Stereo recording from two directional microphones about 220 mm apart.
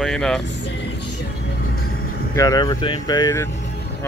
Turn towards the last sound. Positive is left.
turn(degrees=15)  # may be behind; listen again after turning